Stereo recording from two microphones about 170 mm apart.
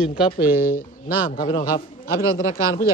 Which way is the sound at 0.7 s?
60° left (ahead or behind).